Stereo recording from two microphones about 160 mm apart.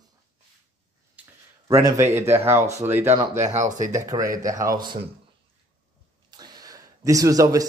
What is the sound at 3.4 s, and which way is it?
Speech, 50° right (ahead or behind).